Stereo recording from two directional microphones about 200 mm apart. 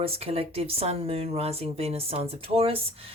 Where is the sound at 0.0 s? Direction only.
30° right (ahead or behind).